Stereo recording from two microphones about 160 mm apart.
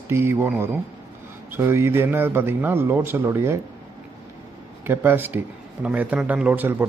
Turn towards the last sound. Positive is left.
turn(degrees=-10)  # may be behind; listen again after turning